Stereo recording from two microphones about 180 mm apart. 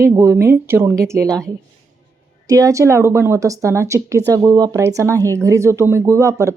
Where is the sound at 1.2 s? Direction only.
5° left (ahead or behind).